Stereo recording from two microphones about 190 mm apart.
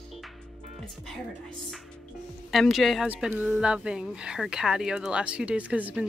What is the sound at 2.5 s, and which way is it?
Speech, centre (ahead or behind).